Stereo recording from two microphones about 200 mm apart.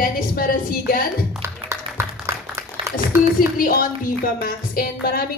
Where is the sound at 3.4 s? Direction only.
45° left (ahead or behind).